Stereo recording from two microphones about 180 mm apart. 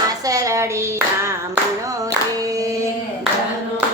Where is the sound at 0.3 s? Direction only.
20° right (ahead or behind).